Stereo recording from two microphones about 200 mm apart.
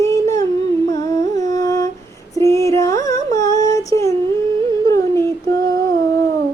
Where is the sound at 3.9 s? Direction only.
15° left (ahead or behind).